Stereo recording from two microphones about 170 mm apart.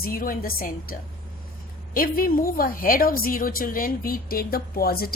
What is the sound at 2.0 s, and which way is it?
A woman's voice, 55° left (ahead or behind).